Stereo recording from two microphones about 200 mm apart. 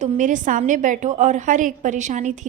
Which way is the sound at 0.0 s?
40° right (ahead or behind).